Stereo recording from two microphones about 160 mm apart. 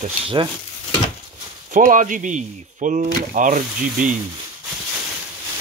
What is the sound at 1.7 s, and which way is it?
Speech, 55° right (ahead or behind).